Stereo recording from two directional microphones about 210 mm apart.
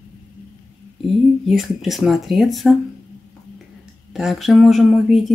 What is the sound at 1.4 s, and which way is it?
Speech, centre (ahead or behind).